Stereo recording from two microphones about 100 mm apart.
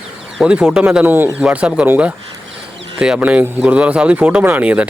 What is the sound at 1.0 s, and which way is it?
Speech, 20° right (ahead or behind).